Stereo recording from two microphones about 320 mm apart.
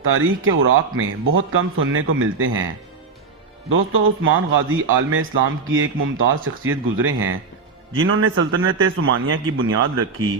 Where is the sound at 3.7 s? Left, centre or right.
Right.